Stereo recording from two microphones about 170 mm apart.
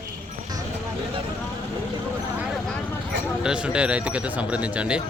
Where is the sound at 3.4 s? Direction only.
5° right (ahead or behind).